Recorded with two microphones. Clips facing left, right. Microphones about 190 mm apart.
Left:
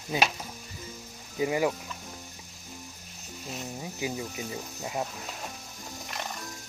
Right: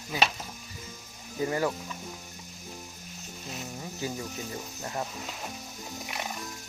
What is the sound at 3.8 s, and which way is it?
Speech, 10° left (ahead or behind).